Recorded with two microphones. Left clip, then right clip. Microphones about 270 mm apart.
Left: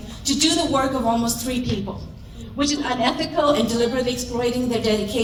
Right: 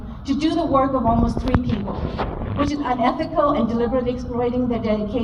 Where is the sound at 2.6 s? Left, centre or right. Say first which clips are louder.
Right 1 dB; centre.